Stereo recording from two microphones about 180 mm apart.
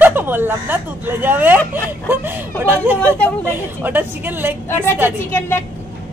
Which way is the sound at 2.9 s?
10° left (ahead or behind).